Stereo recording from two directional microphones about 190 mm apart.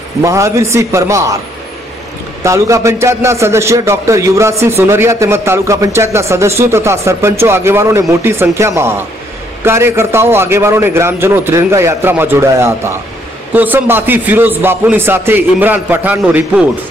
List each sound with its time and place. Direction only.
0.2 s a man's voice: 15° right (ahead or behind)
2.4 s a man's voice: 15° right (ahead or behind)